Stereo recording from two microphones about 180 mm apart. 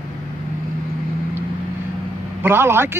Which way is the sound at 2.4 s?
15° right (ahead or behind).